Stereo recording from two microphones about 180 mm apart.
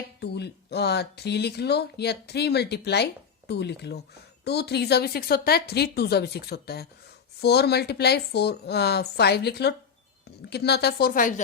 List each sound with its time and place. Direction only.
0.2 s speech: 65° left (ahead or behind); by 11.3 s 50° left (ahead or behind)